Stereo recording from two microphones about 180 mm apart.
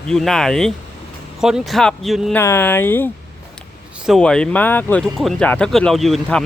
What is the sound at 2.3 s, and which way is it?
Speech, 15° left (ahead or behind).